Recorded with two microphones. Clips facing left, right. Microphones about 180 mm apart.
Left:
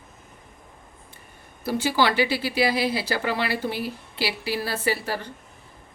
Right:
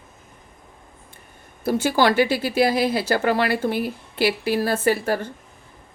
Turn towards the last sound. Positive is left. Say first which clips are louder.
# right 6 dB
turn(degrees=-50)  # may be behind; listen again after turning